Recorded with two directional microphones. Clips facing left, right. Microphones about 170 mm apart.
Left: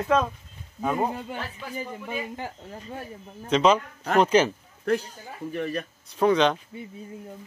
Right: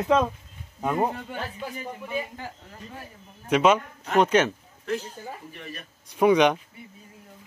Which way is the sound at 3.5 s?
5° right (ahead or behind).